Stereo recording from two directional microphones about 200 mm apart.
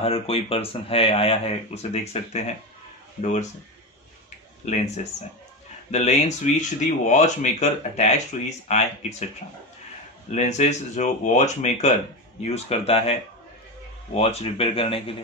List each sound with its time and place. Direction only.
0.0 s speech: 30° left (ahead or behind)
4.6 s speech: 35° left (ahead or behind)
5.9 s speech: 35° left (ahead or behind)
10.3 s speech: 35° left (ahead or behind)